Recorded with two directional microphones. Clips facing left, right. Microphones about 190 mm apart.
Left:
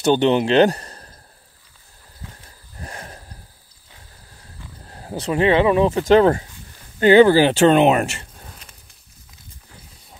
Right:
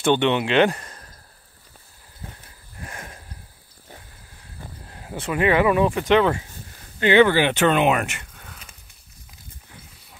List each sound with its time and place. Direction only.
0.0 s speech: 35° left (ahead or behind)
2.8 s a sound: 35° left (ahead or behind)
4.8 s speech: 35° left (ahead or behind)
6.0 s speech: 40° left (ahead or behind)